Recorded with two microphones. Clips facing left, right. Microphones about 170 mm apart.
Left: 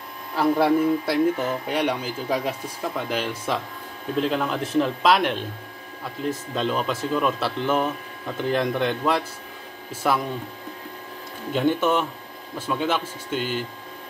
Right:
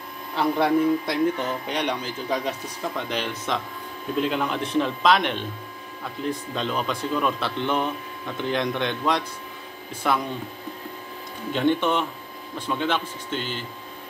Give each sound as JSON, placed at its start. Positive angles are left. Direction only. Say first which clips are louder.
{"t": 0.4, "sound": "speech", "louder": "left 2 dB", "side_deg": 5}
{"t": 11.5, "sound": "speech", "louder": "left 1 dB", "side_deg": 5}